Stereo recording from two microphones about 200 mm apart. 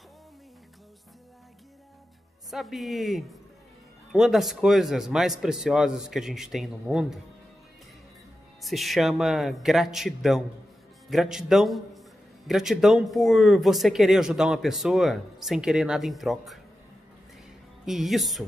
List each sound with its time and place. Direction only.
2.5 s speech: centre (ahead or behind)
8.6 s speech: centre (ahead or behind)
17.8 s speech: centre (ahead or behind)